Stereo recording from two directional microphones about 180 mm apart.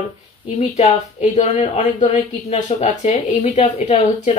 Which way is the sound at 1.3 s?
40° left (ahead or behind).